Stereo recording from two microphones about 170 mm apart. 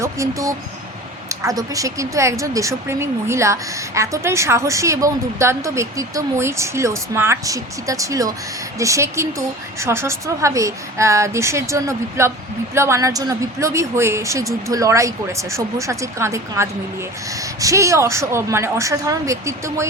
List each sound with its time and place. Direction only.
0.0 s speech: 20° right (ahead or behind)